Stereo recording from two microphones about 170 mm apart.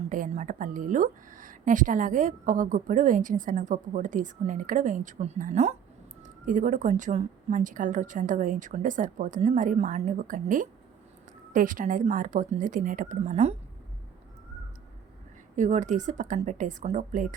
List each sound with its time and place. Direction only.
0.1 s a woman's voice: 50° right (ahead or behind)
15.5 s a woman's voice: 45° right (ahead or behind)